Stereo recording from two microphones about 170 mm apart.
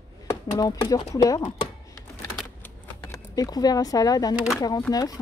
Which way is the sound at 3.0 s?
20° left (ahead or behind).